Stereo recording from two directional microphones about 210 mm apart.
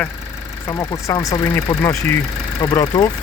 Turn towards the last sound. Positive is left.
turn(degrees=20)  # may be behind; listen again after turning